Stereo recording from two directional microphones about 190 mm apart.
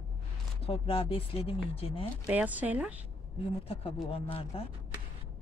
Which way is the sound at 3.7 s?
30° left (ahead or behind).